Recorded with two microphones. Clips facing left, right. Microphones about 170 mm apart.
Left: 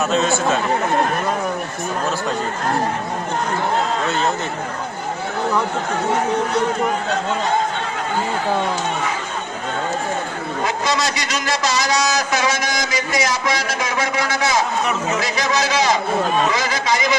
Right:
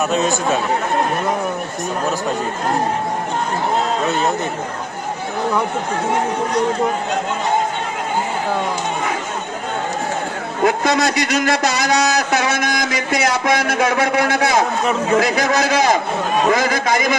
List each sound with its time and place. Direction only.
0.1 s speech: 15° right (ahead or behind)
10.7 s a man's voice: 55° right (ahead or behind)